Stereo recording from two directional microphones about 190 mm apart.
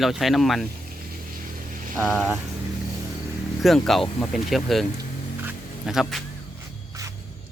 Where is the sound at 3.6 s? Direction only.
Centre (ahead or behind).